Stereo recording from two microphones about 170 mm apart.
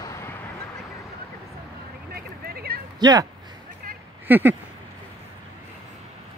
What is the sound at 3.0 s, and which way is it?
Speech, 20° right (ahead or behind).